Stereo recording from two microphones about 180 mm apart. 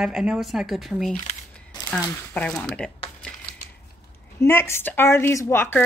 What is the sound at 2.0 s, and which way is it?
Speech, 10° left (ahead or behind).